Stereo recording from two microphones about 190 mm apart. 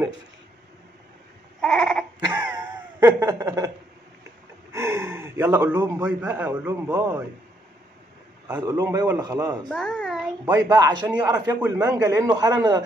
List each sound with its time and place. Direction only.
1.6 s goat: centre (ahead or behind)
2.5 s a sound: 15° right (ahead or behind)
4.7 s a man's voice: 15° right (ahead or behind)
8.5 s a man's voice: 20° right (ahead or behind)
9.7 s a child's voice: 5° left (ahead or behind)
10.5 s a man's voice: 20° right (ahead or behind)